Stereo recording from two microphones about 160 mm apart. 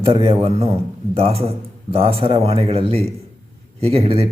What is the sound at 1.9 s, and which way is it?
A man's voice, 35° right (ahead or behind).